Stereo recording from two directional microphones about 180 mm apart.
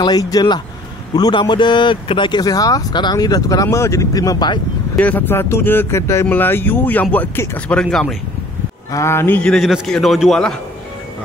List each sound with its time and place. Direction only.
0.0 s a man's voice: 20° left (ahead or behind)
4.9 s speech: 10° left (ahead or behind)
8.9 s a man's voice: 15° left (ahead or behind)